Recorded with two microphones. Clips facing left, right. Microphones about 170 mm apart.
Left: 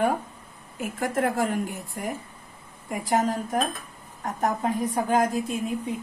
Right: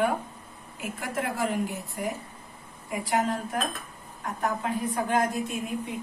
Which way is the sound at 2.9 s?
45° left (ahead or behind).